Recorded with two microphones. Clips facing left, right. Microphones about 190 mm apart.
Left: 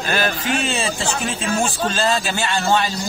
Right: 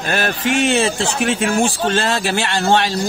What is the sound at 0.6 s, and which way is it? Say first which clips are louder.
Speech: right 6 dB; 90° right.